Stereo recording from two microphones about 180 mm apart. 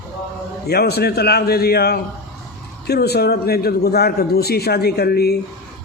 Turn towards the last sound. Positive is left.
turn(degrees=60)  # may be behind; listen again after turning